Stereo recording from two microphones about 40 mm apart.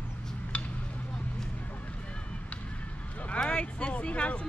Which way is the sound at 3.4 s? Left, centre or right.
Left.